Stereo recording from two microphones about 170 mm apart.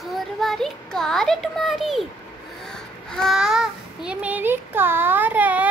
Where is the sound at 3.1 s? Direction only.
Centre (ahead or behind).